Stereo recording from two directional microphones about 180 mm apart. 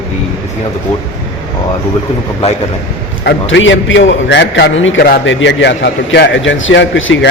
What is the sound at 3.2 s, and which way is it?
A man's voice, 90° left.